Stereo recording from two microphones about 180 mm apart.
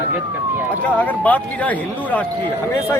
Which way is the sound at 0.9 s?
10° left (ahead or behind).